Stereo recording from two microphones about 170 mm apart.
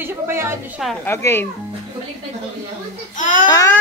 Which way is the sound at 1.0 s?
15° left (ahead or behind).